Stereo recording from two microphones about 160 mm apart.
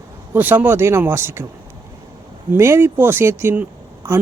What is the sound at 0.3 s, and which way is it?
A man's voice, 10° right (ahead or behind).